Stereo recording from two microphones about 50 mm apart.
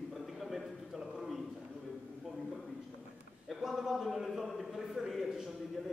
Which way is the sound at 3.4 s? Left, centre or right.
Centre.